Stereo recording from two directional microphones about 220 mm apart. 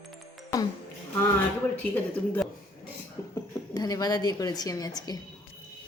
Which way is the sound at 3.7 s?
15° left (ahead or behind).